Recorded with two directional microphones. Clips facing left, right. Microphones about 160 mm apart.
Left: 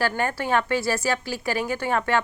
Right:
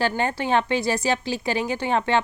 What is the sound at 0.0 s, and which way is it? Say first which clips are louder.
A woman's voice: right 1 dB; 20° right (ahead or behind).